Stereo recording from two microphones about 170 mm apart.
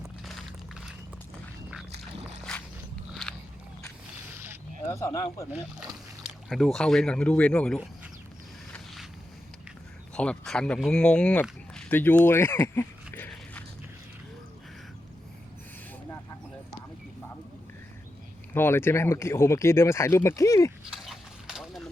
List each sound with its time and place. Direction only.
0.0 s walk: centre (ahead or behind)
4.9 s speech: 20° left (ahead or behind)
6.2 s speech: centre (ahead or behind)
10.2 s speech: 5° left (ahead or behind)
13.3 s a sound: 10° left (ahead or behind)
18.5 s speech: 15° left (ahead or behind)
20.9 s mechanisms: centre (ahead or behind)